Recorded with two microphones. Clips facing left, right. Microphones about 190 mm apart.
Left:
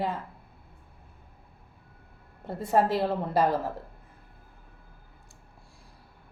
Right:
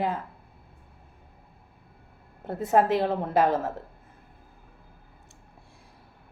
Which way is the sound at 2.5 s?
5° right (ahead or behind).